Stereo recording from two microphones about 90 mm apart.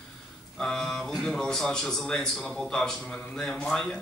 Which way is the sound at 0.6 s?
5° left (ahead or behind).